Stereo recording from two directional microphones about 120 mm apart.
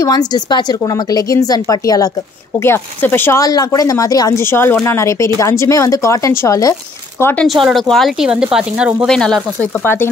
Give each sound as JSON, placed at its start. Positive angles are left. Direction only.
{"t": 0.0, "sound": "a woman's voice", "side_deg": 35}
{"t": 2.6, "sound": "speech", "side_deg": 20}
{"t": 3.4, "sound": "speech", "side_deg": 30}
{"t": 7.4, "sound": "speech", "side_deg": 0}
{"t": 9.0, "sound": "speech", "side_deg": 5}